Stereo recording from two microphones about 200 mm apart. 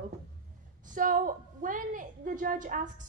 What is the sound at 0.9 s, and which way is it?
A woman's voice, 40° right (ahead or behind).